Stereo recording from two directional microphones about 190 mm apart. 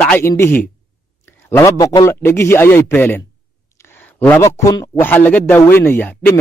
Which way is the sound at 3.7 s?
10° left (ahead or behind).